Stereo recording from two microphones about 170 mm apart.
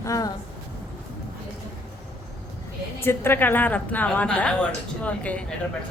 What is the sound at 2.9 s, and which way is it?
A woman's voice, 15° left (ahead or behind).